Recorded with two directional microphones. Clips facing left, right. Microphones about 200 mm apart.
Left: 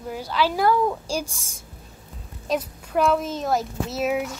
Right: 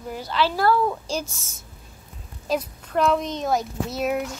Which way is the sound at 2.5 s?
Centre (ahead or behind).